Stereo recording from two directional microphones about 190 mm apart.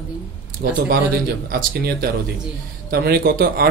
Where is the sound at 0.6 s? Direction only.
55° right (ahead or behind).